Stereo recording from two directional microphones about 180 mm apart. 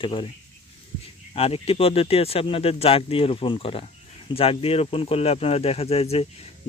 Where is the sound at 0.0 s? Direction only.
30° left (ahead or behind).